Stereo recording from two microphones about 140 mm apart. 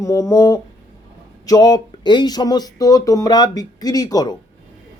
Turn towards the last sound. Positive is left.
turn(degrees=30)  # may be behind; listen again after turning